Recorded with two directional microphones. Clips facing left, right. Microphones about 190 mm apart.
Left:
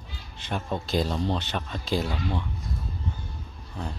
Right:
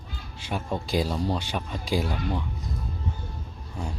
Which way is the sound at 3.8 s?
10° right (ahead or behind).